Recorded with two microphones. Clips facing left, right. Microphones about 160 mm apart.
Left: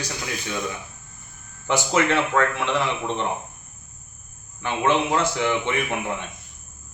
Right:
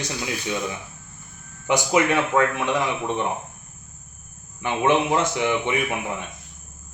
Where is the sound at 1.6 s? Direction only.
15° right (ahead or behind).